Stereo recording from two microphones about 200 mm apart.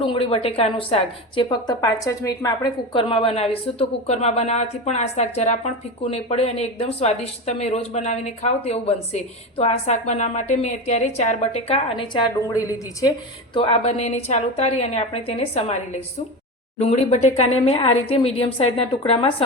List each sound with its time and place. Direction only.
0.0 s a woman's voice: 25° left (ahead or behind)